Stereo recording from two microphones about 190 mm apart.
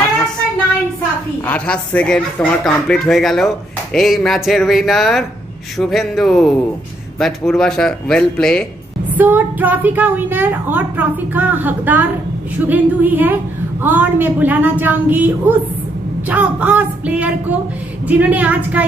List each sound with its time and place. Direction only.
1.4 s speech: 10° left (ahead or behind)
9.1 s a woman's voice: 10° right (ahead or behind)